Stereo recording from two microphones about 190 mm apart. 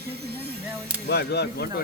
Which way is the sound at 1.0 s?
60° left (ahead or behind).